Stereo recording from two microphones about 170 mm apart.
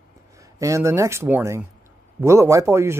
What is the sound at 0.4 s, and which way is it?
Speech, 20° right (ahead or behind).